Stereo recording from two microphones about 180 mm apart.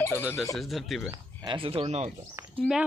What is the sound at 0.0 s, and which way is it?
Speech, 10° left (ahead or behind).